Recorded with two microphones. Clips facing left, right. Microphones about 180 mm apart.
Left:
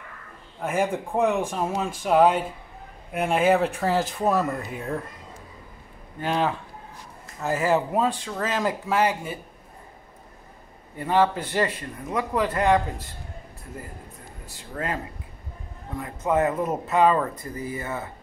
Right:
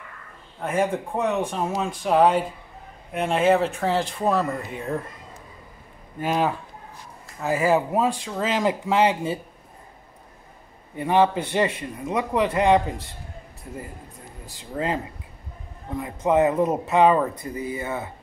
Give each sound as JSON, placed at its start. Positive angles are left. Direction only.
{"t": 0.6, "sound": "speech", "side_deg": 5}
{"t": 6.2, "sound": "speech", "side_deg": -10}
{"t": 11.0, "sound": "a man's voice", "side_deg": -20}
{"t": 14.7, "sound": "a man's voice", "side_deg": -20}
{"t": 16.0, "sound": "speech", "side_deg": -15}